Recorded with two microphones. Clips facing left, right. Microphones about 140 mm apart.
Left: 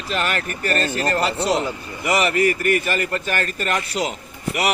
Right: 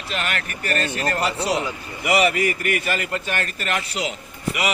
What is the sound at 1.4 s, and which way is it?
Speech, 50° left (ahead or behind).